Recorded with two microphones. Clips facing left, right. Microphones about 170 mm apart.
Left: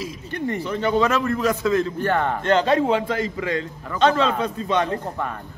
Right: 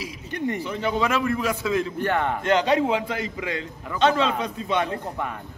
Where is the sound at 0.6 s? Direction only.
10° right (ahead or behind).